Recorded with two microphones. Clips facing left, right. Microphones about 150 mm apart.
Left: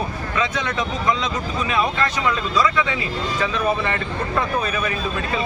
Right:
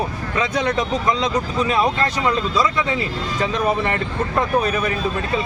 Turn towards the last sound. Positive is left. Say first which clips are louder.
# right 3 dB
turn(degrees=-40)  # may be behind; listen again after turning